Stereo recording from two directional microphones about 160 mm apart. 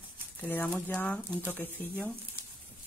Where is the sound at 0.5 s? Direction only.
10° left (ahead or behind).